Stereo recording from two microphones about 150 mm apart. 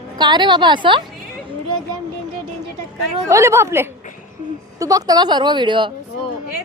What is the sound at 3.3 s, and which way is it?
A woman's voice, 20° right (ahead or behind).